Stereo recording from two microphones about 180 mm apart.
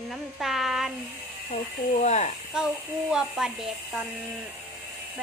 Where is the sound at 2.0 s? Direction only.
40° left (ahead or behind).